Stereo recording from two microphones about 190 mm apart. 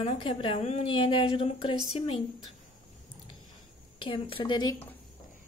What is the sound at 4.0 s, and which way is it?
Speech, 25° left (ahead or behind).